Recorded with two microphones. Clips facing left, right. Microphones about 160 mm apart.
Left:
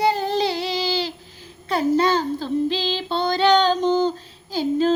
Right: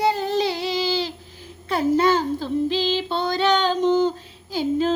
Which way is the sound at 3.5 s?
30° left (ahead or behind).